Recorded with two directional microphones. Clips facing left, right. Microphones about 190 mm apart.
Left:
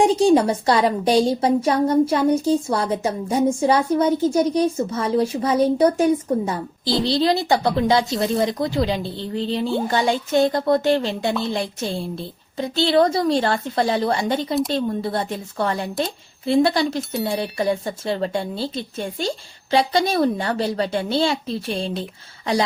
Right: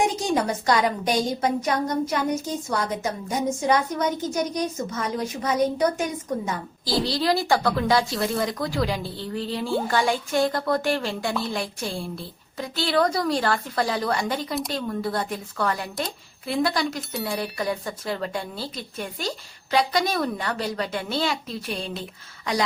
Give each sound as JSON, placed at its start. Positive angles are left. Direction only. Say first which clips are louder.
{"t": 0.0, "sound": "a woman's voice", "louder": "left 8 dB", "side_deg": 30}